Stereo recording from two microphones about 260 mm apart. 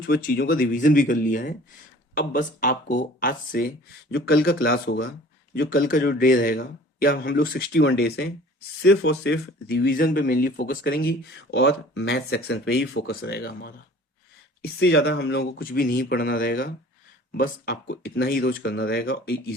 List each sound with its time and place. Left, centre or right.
0.0 s a man's voice: left